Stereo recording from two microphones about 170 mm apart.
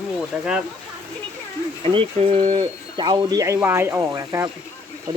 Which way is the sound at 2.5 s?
25° right (ahead or behind).